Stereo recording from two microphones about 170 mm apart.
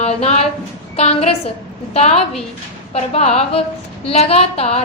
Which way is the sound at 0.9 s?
35° left (ahead or behind).